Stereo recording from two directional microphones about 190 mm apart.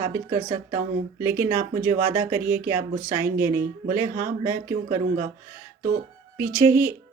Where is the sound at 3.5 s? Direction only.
45° right (ahead or behind).